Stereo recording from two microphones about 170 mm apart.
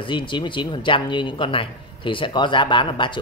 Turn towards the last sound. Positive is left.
turn(degrees=30)  # may be behind; listen again after turning